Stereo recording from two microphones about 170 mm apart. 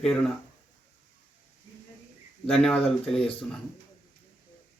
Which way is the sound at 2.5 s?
5° left (ahead or behind).